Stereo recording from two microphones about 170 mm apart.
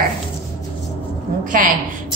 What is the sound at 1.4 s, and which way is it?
Speech, 50° right (ahead or behind).